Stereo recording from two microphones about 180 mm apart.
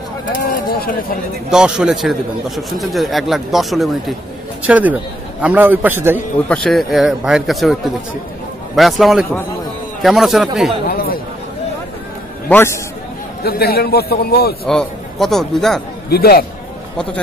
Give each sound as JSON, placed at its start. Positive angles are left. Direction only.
{"t": 0.4, "sound": "speech", "side_deg": 55}
{"t": 1.5, "sound": "a man's voice", "side_deg": -5}
{"t": 6.5, "sound": "a man's voice", "side_deg": 0}
{"t": 10.9, "sound": "a sound", "side_deg": 55}
{"t": 12.4, "sound": "a man's voice", "side_deg": 10}
{"t": 13.4, "sound": "a man's voice", "side_deg": 60}
{"t": 14.7, "sound": "a man's voice", "side_deg": 0}
{"t": 16.1, "sound": "a man's voice", "side_deg": 60}